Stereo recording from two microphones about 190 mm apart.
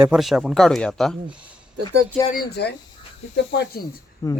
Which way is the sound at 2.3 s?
60° left (ahead or behind).